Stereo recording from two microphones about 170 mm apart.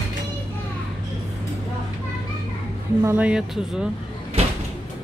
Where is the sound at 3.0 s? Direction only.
10° right (ahead or behind).